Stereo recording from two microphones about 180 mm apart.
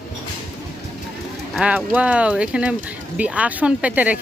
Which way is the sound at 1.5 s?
5° right (ahead or behind).